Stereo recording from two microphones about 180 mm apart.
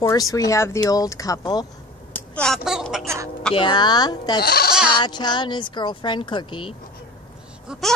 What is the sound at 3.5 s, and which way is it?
Speech, 25° left (ahead or behind).